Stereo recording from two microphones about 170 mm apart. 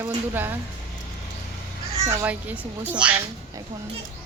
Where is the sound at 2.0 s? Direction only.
10° right (ahead or behind).